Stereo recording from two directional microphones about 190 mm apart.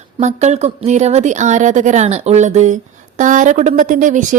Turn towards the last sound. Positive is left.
turn(degrees=-40)  # may be behind; listen again after turning